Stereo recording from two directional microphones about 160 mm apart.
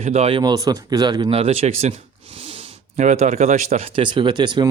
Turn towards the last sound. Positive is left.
turn(degrees=-30)  # may be behind; listen again after turning